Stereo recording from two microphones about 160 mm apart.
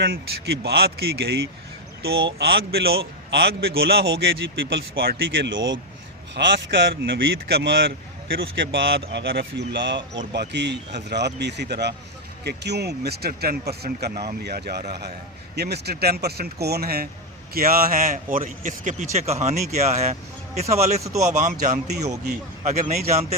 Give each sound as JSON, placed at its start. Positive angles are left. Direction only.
{"t": 0.0, "sound": "a man's voice", "side_deg": -85}
{"t": 6.3, "sound": "a man's voice", "side_deg": -90}